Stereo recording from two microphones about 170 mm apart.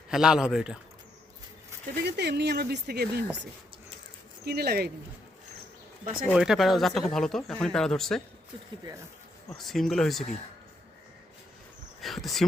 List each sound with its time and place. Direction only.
0.1 s speech: 5° right (ahead or behind)
2.0 s speech: 80° right
6.3 s speech: 5° right (ahead or behind)
9.6 s speech: centre (ahead or behind)
11.9 s speech: centre (ahead or behind)